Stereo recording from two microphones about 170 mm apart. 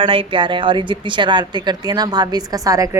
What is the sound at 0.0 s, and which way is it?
Speech, 30° right (ahead or behind).